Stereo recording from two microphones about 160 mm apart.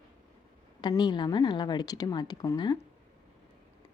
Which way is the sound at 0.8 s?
30° left (ahead or behind).